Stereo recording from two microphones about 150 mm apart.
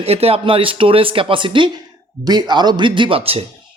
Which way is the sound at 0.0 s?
40° right (ahead or behind).